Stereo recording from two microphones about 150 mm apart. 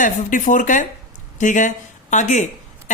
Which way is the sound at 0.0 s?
60° left (ahead or behind).